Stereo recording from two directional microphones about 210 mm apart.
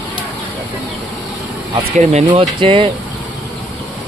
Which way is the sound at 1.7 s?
30° right (ahead or behind).